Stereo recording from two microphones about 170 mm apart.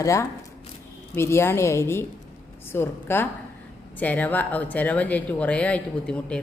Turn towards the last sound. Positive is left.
turn(degrees=5)  # may be behind; listen again after turning